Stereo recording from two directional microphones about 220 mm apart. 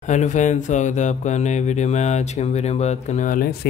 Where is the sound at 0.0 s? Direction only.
35° left (ahead or behind).